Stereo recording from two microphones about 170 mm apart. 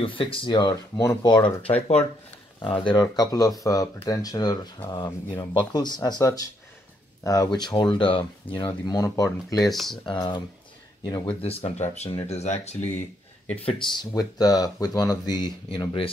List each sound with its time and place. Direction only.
0.0 s speech: 30° left (ahead or behind)
2.8 s speech: 25° left (ahead or behind)
9.6 s speech: centre (ahead or behind)
10.0 s speech: 25° left (ahead or behind)
11.4 s speech: 35° left (ahead or behind)
13.7 s speech: 25° left (ahead or behind)